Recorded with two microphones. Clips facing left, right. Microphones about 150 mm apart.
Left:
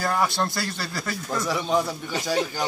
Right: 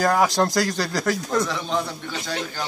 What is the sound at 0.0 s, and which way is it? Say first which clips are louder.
Speech: right 5 dB; 75° right (ahead or behind).